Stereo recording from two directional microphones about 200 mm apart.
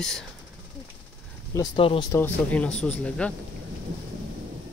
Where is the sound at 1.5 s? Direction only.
25° left (ahead or behind).